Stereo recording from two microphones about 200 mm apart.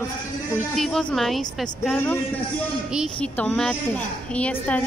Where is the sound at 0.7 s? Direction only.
Centre (ahead or behind).